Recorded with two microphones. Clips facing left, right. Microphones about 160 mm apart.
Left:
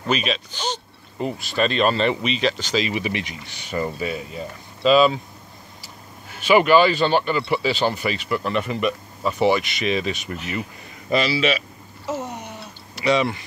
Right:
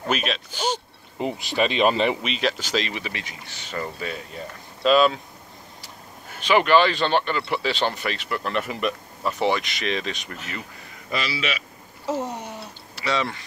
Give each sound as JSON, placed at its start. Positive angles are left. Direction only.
{"t": 0.1, "sound": "speech", "side_deg": 0}
{"t": 2.2, "sound": "speech", "side_deg": 0}
{"t": 3.0, "sound": "speech", "side_deg": 20}
{"t": 4.8, "sound": "speech", "side_deg": 0}
{"t": 6.4, "sound": "speech", "side_deg": 10}
{"t": 11.1, "sound": "speech", "side_deg": 25}
{"t": 12.1, "sound": "a sound", "side_deg": -35}
{"t": 12.9, "sound": "speech", "side_deg": 15}